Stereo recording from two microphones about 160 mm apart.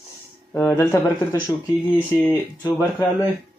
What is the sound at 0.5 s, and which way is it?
Speech, 15° left (ahead or behind).